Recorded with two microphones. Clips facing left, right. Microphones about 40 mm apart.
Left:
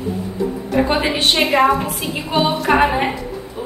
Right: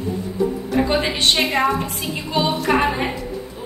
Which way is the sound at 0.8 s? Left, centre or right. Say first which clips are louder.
Left 2 dB; centre.